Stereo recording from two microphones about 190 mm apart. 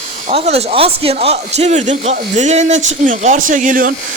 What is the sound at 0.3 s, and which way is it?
A man's voice, 35° right (ahead or behind).